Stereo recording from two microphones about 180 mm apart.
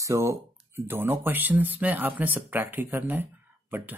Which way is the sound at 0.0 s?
15° right (ahead or behind).